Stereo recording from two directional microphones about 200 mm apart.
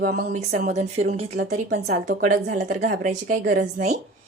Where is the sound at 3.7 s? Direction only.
35° right (ahead or behind).